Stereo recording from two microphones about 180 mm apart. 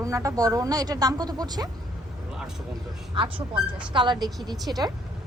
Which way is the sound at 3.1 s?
30° right (ahead or behind).